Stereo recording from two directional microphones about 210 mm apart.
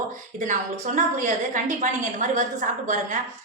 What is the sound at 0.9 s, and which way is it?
A woman's voice, 35° right (ahead or behind).